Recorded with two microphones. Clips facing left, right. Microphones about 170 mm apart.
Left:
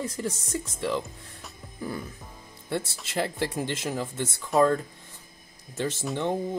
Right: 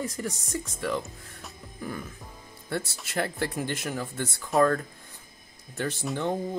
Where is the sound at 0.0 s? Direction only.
25° left (ahead or behind).